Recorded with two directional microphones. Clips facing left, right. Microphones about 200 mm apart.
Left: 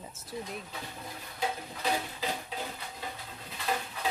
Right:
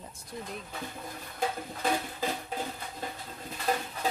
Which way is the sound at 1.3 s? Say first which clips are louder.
Right 2 dB; 50° right (ahead or behind).